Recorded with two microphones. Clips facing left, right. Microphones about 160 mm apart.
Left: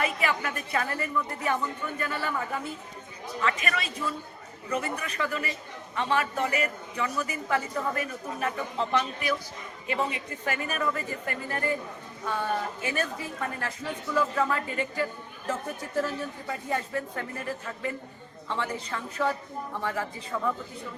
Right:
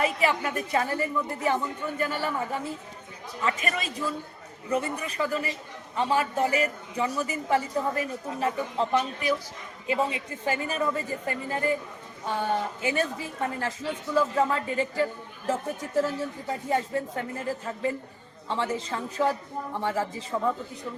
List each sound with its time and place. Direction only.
0.0 s a woman's voice: 30° right (ahead or behind)
8.8 s speech: 5° right (ahead or behind)
9.8 s a woman's voice: 25° right (ahead or behind)
16.5 s a woman's voice: 25° right (ahead or behind)